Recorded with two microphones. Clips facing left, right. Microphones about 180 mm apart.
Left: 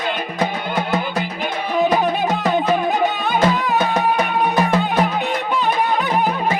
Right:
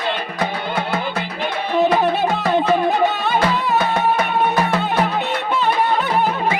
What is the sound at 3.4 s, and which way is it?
Music, 15° left (ahead or behind).